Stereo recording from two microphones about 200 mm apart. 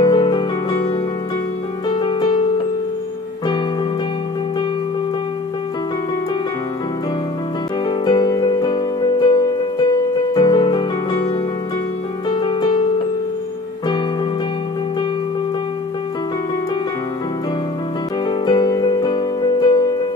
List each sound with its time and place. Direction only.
0.0 s music: 20° left (ahead or behind)
1.9 s music: 20° left (ahead or behind)
7.9 s music: 20° left (ahead or behind)
12.3 s music: 20° left (ahead or behind)
18.4 s music: 20° left (ahead or behind)